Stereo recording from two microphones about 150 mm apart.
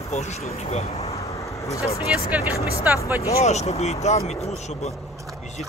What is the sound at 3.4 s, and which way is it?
Speech, 50° left (ahead or behind).